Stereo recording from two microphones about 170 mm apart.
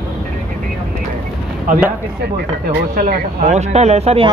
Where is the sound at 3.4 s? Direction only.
45° right (ahead or behind).